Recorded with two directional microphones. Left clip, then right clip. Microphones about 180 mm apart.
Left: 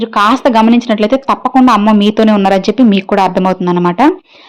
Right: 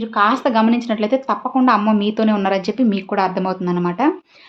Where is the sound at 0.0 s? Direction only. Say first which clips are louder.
Left 6 dB; 45° left (ahead or behind).